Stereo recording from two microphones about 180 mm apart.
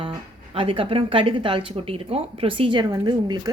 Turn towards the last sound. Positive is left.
turn(degrees=-20)  # may be behind; listen again after turning